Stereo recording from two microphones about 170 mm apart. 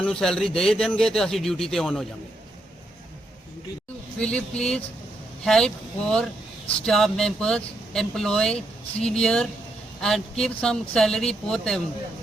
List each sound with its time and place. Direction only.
0.0 s a man's voice: 5° left (ahead or behind)
4.2 s a man's voice: 5° left (ahead or behind)